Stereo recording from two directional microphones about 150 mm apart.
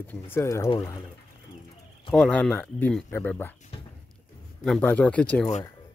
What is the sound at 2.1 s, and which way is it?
Speech, 5° left (ahead or behind).